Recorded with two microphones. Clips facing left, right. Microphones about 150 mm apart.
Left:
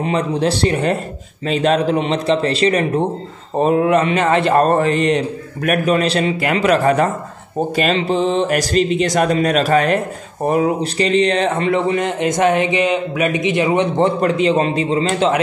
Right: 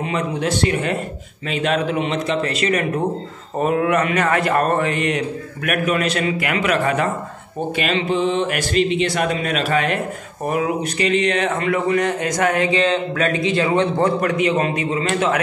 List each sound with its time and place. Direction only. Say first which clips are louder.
0.0 s a man's voice: left 4 dB; 35° left (ahead or behind)